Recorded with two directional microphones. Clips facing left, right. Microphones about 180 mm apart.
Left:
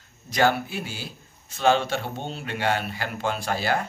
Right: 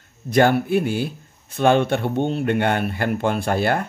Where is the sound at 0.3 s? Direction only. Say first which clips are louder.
Right 6 dB; 55° right (ahead or behind).